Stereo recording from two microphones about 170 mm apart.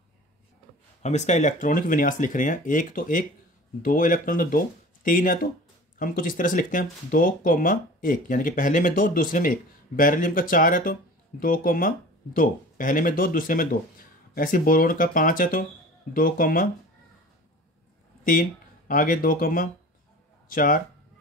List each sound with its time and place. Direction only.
1.0 s speech: 45° left (ahead or behind)
18.2 s speech: 50° left (ahead or behind)